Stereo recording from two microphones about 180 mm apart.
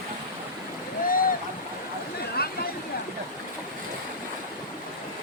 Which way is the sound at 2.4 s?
60° left (ahead or behind).